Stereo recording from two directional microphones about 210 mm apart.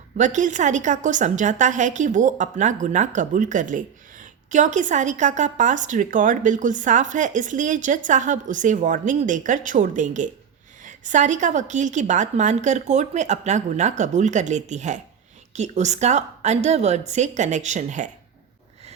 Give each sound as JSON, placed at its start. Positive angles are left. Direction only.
{"t": 0.2, "sound": "a woman's voice", "side_deg": -35}